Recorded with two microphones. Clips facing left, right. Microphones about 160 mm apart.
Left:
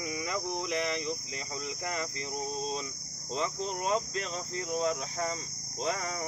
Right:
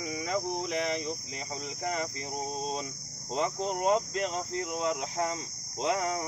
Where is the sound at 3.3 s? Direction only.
55° right (ahead or behind).